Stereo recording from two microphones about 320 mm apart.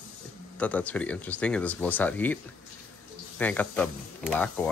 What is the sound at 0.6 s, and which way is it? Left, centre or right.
Speech, centre.